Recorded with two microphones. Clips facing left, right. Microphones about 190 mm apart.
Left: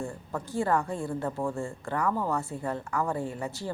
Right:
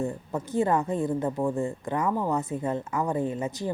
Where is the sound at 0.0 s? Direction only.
20° right (ahead or behind).